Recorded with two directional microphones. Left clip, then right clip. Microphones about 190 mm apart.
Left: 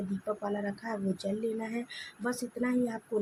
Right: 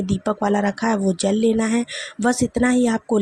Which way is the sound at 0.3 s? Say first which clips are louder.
Right 14 dB; 45° right (ahead or behind).